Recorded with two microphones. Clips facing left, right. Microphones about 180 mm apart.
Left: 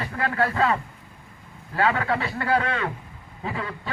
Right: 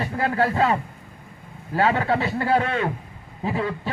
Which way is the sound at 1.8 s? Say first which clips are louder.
Right 3 dB; 30° right (ahead or behind).